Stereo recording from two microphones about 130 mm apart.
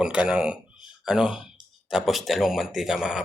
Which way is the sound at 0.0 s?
10° right (ahead or behind).